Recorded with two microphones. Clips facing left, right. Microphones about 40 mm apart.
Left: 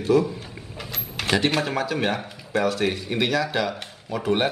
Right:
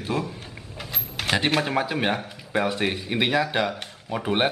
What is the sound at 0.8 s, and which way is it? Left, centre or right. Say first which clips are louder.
Cash register: even; centre.